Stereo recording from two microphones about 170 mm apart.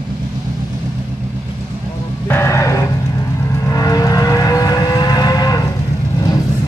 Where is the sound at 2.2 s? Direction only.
15° left (ahead or behind).